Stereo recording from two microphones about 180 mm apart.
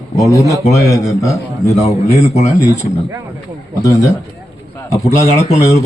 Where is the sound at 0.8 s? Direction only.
15° left (ahead or behind).